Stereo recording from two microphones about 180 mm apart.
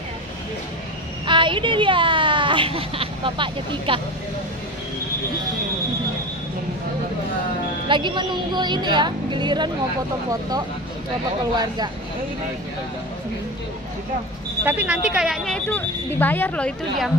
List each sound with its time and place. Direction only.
1.2 s speech: 25° right (ahead or behind)
7.9 s a woman's voice: 25° right (ahead or behind)
11.5 s a woman's voice: 20° right (ahead or behind)
14.6 s speech: 10° right (ahead or behind); by 17.1 s 5° left (ahead or behind)